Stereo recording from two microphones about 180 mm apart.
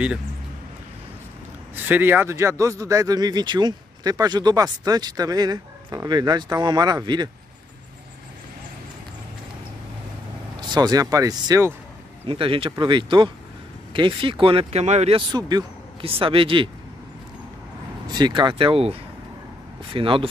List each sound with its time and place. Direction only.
1.9 s speech: 10° right (ahead or behind)
10.6 s speech: 25° right (ahead or behind)
12.3 s speech: 30° right (ahead or behind)
18.0 s speech: 25° right (ahead or behind)